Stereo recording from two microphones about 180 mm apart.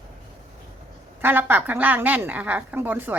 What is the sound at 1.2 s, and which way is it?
A woman's voice, 10° right (ahead or behind).